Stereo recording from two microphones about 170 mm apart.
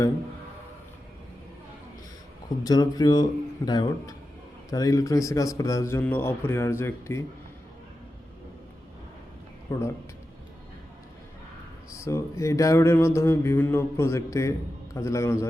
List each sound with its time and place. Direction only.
2.6 s a man's voice: 25° left (ahead or behind)
9.7 s a man's voice: 20° left (ahead or behind)
11.9 s mantra: 15° left (ahead or behind)